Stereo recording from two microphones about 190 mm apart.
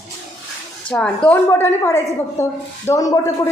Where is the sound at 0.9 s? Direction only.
5° left (ahead or behind).